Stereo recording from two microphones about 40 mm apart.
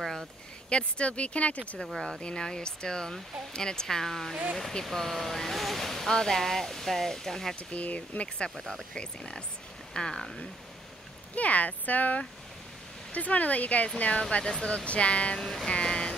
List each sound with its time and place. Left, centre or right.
0.0 s a sound: centre
0.7 s speech: left
2.0 s speech: centre
7.5 s speech: left
8.9 s speech: left
11.3 s speech: left
14.4 s speech: centre
14.9 s speech: left
15.3 s speech: centre
15.7 s a sound: left